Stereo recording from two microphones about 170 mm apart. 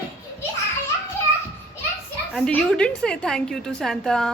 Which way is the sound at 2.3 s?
5° left (ahead or behind).